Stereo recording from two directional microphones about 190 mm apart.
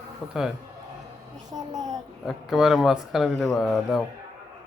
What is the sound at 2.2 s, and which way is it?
Speech, centre (ahead or behind).